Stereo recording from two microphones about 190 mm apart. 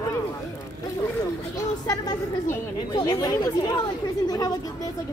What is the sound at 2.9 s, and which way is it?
Speech, 20° left (ahead or behind).